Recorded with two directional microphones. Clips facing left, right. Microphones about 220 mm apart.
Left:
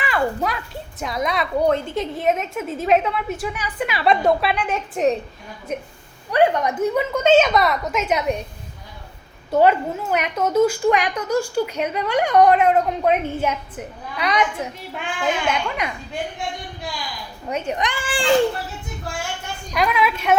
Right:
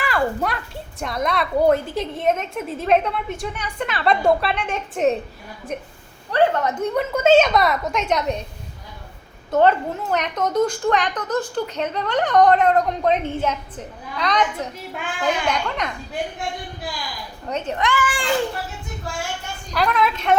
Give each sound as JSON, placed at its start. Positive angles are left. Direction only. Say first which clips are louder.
{"t": 0.0, "sound": "a woman's voice", "louder": "even", "side_deg": 0}
{"t": 6.3, "sound": "a woman's voice", "louder": "left 1 dB", "side_deg": 15}
{"t": 9.5, "sound": "a woman's voice", "louder": "left 1 dB", "side_deg": 10}
{"t": 17.4, "sound": "speech", "louder": "even", "side_deg": 10}
{"t": 19.7, "sound": "a woman's voice", "louder": "even", "side_deg": 10}